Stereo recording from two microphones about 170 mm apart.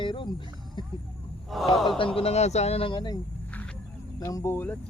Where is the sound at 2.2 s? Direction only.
40° left (ahead or behind).